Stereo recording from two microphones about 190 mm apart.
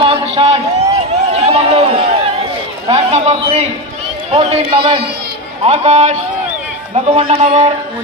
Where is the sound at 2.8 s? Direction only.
30° right (ahead or behind).